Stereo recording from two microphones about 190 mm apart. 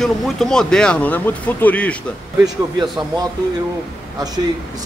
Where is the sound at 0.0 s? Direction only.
5° left (ahead or behind).